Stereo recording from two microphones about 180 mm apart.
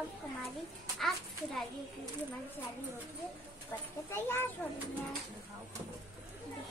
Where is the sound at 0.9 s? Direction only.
Centre (ahead or behind).